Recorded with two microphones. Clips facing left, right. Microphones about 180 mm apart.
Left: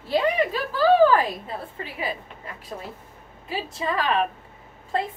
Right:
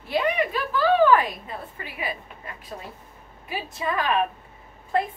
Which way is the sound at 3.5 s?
25° left (ahead or behind).